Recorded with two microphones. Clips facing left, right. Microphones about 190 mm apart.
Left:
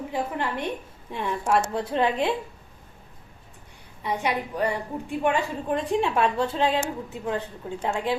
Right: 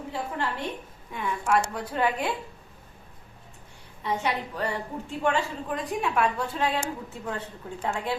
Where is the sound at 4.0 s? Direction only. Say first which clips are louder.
Left 2 dB; 15° left (ahead or behind).